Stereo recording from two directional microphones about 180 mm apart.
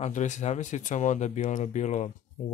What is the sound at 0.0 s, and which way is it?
Speech, 40° left (ahead or behind).